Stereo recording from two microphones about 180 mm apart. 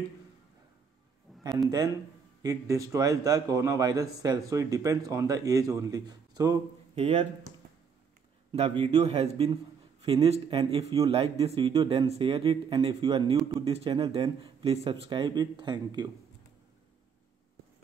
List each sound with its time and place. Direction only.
2.4 s a man's voice: 20° right (ahead or behind)
8.5 s a man's voice: 30° right (ahead or behind)